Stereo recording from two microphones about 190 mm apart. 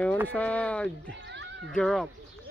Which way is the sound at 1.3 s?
70° right (ahead or behind).